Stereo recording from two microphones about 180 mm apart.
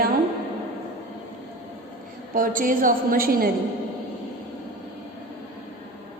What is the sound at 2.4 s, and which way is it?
A woman's voice, 50° right (ahead or behind).